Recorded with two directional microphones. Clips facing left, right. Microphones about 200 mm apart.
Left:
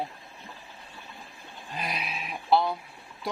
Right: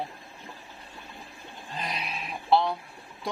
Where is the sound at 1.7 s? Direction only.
10° left (ahead or behind).